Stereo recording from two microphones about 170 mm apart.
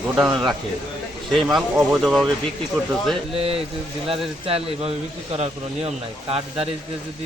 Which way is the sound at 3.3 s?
35° right (ahead or behind).